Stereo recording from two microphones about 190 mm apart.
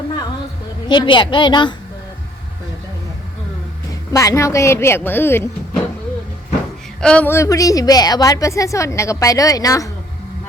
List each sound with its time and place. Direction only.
0.9 s a woman's voice: 25° left (ahead or behind)
4.1 s a woman's voice: 15° left (ahead or behind)
7.0 s a woman's voice: 5° left (ahead or behind)